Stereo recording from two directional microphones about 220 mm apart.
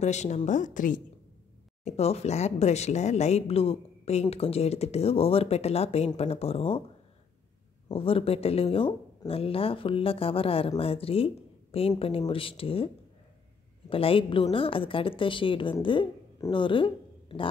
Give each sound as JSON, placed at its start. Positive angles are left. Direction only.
{"t": 0.0, "sound": "a woman's voice", "side_deg": 30}
{"t": 7.9, "sound": "speech", "side_deg": 25}